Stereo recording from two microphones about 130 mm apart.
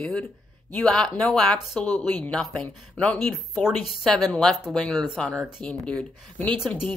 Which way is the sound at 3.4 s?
Centre (ahead or behind).